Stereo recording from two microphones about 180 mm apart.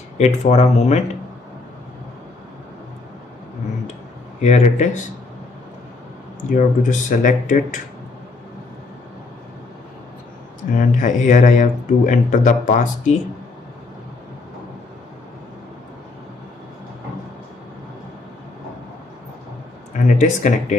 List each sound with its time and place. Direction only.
0.2 s speech: 40° left (ahead or behind)
4.4 s speech: 40° left (ahead or behind)
6.5 s speech: 45° left (ahead or behind)
10.7 s speech: 45° left (ahead or behind)
20.1 s speech: 40° left (ahead or behind)